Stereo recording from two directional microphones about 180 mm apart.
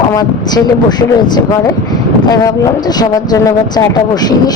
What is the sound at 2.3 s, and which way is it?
Speech, 20° left (ahead or behind).